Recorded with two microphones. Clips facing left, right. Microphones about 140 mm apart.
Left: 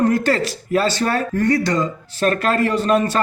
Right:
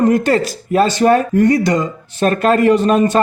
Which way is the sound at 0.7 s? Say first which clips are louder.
Right 7 dB; 20° right (ahead or behind).